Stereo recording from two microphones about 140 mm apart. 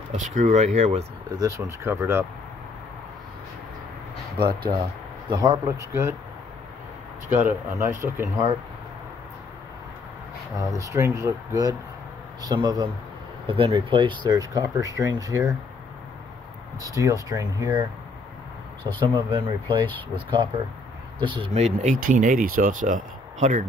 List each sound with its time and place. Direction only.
0.1 s speech: 60° right (ahead or behind)
1.3 s speech: 20° right (ahead or behind)
4.4 s speech: 35° right (ahead or behind)
5.3 s speech: 25° right (ahead or behind)
7.2 s speech: 15° right (ahead or behind)
10.8 s speech: 20° right (ahead or behind)
16.8 s speech: 25° right (ahead or behind)
18.9 s speech: 35° right (ahead or behind)
21.5 s speech: 50° right (ahead or behind)
21.9 s speech: 75° right (ahead or behind)